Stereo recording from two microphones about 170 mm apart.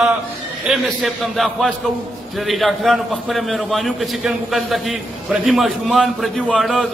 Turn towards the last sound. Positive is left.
turn(degrees=0)  # may be behind; listen again after turning